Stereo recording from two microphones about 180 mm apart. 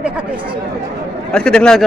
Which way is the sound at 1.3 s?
5° left (ahead or behind).